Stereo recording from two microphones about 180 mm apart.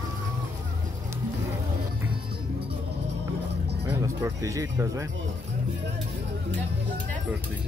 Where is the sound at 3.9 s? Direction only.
15° right (ahead or behind).